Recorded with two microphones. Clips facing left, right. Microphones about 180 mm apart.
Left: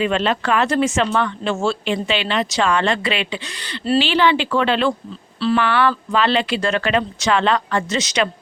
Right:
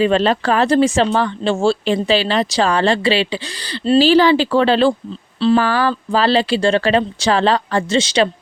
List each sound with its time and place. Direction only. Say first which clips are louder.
0.0 s speech: right 5 dB; 35° right (ahead or behind)